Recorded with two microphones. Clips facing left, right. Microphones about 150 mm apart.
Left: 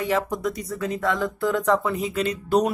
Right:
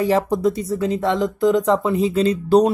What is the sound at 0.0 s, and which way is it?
Speech, 35° right (ahead or behind).